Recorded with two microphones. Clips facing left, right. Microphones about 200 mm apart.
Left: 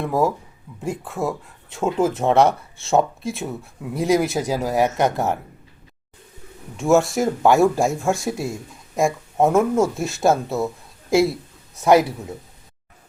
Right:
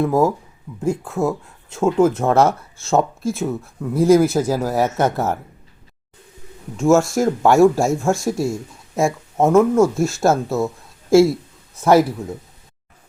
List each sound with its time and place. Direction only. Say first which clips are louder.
0.0 s speech: right 4 dB; centre (ahead or behind)
4.4 s speech: right 2 dB; 15° left (ahead or behind)
5.1 s speech: right 1 dB; centre (ahead or behind)
6.7 s speech: right 2 dB; centre (ahead or behind)